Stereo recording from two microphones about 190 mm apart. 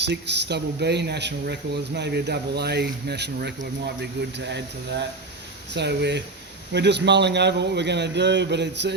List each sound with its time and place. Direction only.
0.0 s speech: 65° right (ahead or behind)